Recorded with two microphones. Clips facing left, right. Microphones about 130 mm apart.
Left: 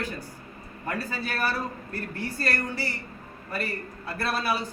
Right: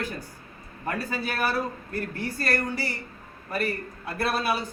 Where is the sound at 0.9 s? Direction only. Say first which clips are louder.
Right 1 dB; 15° right (ahead or behind).